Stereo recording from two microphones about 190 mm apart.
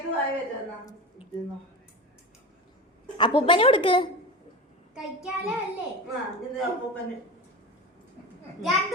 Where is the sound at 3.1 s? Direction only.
25° left (ahead or behind).